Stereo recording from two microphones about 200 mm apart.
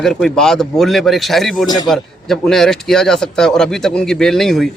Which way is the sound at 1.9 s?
Centre (ahead or behind).